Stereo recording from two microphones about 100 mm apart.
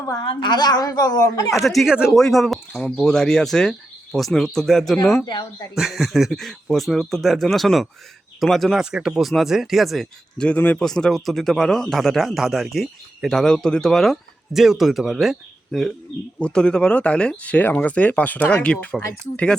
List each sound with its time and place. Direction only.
0.2 s a woman's voice: 50° left (ahead or behind)
1.5 s a man's voice: centre (ahead or behind)
5.2 s a woman's voice: 50° left (ahead or behind)
5.7 s a man's voice: centre (ahead or behind)